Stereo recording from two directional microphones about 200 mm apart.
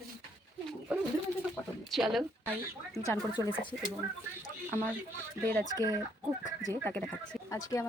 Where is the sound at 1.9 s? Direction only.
Centre (ahead or behind).